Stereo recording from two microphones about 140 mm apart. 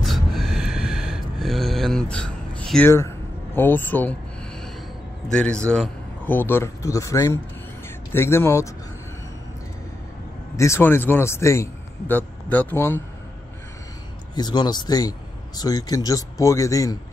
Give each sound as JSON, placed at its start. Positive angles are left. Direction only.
{"t": 0.0, "sound": "a sound", "side_deg": 0}
{"t": 3.5, "sound": "speech", "side_deg": 15}
{"t": 5.3, "sound": "speech", "side_deg": 5}
{"t": 10.5, "sound": "a man's voice", "side_deg": 20}
{"t": 14.3, "sound": "speech", "side_deg": 30}